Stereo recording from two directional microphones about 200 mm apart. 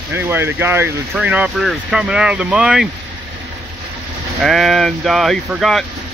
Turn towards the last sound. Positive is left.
turn(degrees=0)  # may be behind; listen again after turning